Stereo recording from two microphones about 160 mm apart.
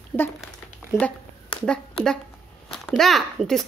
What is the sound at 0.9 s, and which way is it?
Speech, 15° left (ahead or behind).